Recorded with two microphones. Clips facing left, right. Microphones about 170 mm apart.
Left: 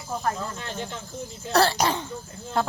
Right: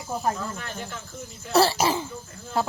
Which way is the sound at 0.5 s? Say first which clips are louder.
Left 2 dB; 25° left (ahead or behind).